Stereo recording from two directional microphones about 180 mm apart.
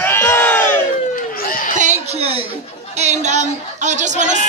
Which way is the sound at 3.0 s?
40° right (ahead or behind).